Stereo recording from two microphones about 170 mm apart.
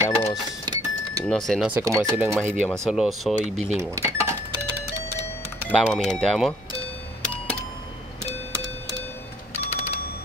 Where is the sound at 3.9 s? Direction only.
15° right (ahead or behind).